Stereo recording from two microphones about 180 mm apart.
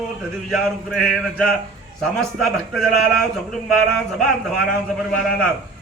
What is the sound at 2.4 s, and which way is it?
Speech, centre (ahead or behind).